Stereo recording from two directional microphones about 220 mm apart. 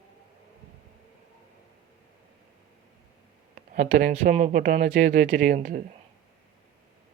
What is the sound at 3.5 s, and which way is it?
Speech, 40° right (ahead or behind).